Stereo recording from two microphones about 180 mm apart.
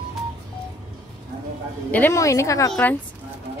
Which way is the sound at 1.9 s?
10° left (ahead or behind).